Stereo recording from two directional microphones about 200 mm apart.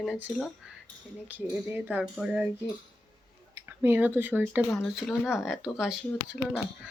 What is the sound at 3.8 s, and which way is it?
A woman's voice, 10° right (ahead or behind).